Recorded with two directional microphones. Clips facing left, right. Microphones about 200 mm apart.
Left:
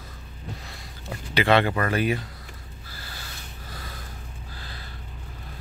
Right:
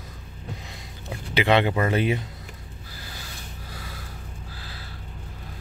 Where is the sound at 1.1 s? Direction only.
15° right (ahead or behind).